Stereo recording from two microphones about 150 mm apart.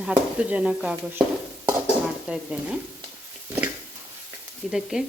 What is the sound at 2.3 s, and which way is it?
Speech, 5° right (ahead or behind).